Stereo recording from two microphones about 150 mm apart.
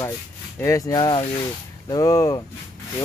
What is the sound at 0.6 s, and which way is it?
Speech, 20° left (ahead or behind).